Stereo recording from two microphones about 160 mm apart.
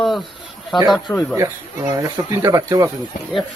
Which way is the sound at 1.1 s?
10° left (ahead or behind).